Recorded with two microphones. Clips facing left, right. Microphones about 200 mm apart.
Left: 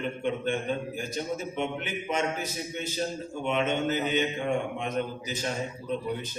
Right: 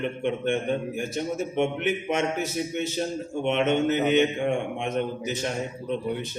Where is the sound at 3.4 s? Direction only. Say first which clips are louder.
Right 4 dB; 65° right (ahead or behind).